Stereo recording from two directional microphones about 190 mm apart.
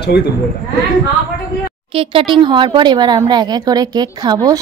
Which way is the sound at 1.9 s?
30° right (ahead or behind).